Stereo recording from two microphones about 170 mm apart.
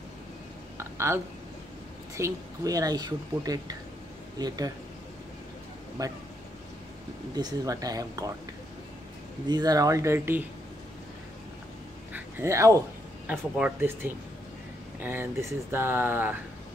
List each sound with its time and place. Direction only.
0.7 s a sound: 15° right (ahead or behind)
2.1 s speech: 20° right (ahead or behind)
6.0 s speech: 20° right (ahead or behind)
7.3 s speech: 20° right (ahead or behind)
9.5 s speech: 20° right (ahead or behind)
12.1 s a sound: 15° right (ahead or behind)
13.3 s speech: 10° right (ahead or behind)